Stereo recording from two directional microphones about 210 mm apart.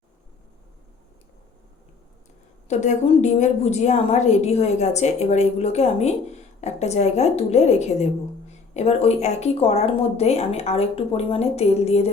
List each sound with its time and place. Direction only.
2.6 s a woman's voice: 35° left (ahead or behind)